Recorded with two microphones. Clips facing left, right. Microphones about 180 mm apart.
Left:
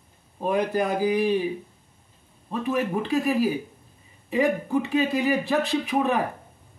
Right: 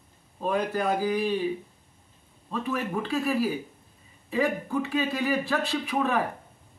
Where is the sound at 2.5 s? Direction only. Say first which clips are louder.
Left 4 dB; 15° left (ahead or behind).